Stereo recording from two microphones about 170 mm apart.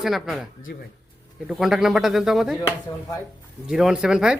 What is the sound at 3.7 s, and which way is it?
Speech, 5° right (ahead or behind).